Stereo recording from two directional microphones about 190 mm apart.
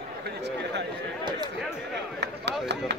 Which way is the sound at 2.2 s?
65° right (ahead or behind).